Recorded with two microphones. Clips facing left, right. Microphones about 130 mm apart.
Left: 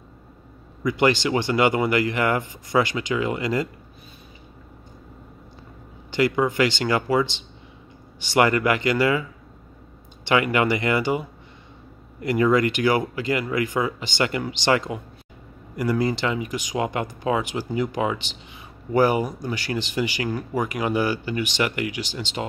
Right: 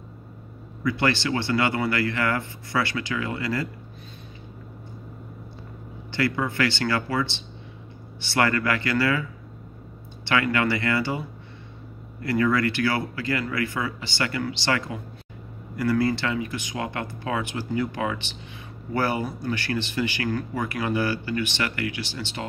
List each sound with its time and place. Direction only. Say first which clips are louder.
0.8 s speech: left 4 dB; 15° left (ahead or behind)
6.1 s speech: left 5 dB; 15° left (ahead or behind)
10.2 s speech: left 3 dB; 20° left (ahead or behind)